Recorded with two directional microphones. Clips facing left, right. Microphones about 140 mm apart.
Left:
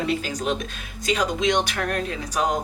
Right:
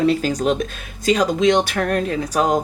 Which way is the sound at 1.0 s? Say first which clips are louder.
Right 7 dB; 40° right (ahead or behind).